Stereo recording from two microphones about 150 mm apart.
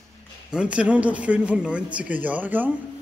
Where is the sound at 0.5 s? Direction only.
10° right (ahead or behind).